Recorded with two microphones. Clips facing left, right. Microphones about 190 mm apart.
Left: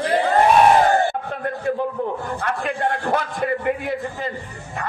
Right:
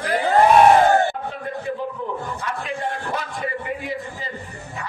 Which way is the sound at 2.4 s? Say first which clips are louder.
Left 4 dB; 55° left (ahead or behind).